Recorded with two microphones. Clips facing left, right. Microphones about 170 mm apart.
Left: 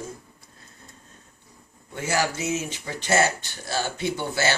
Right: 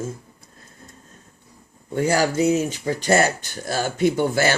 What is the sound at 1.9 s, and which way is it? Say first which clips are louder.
Speech: right 6 dB; 40° right (ahead or behind).